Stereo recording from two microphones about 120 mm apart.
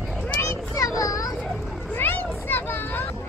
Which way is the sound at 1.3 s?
5° left (ahead or behind).